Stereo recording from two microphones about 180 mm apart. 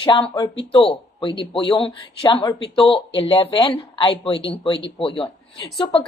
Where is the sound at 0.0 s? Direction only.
25° left (ahead or behind).